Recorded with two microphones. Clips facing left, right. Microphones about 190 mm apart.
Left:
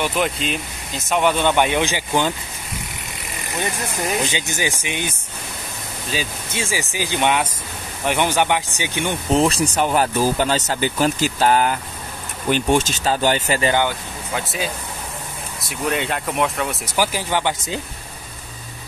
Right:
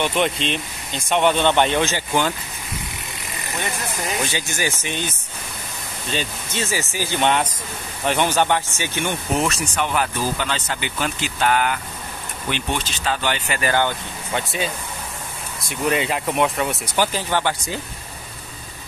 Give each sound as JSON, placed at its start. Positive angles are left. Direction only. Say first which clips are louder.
{"t": 0.0, "sound": "speech", "louder": "right 1 dB", "side_deg": 5}
{"t": 4.2, "sound": "speech", "louder": "left 1 dB", "side_deg": 20}
{"t": 9.3, "sound": "speech", "louder": "left 7 dB", "side_deg": 30}
{"t": 12.4, "sound": "speech", "louder": "left 8 dB", "side_deg": 45}
{"t": 13.6, "sound": "speech", "louder": "left 2 dB", "side_deg": 20}
{"t": 13.8, "sound": "speech", "louder": "left 1 dB", "side_deg": 5}